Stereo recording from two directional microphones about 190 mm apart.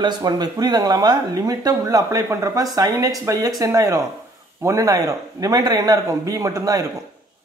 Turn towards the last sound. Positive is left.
turn(degrees=-20)  # may be behind; listen again after turning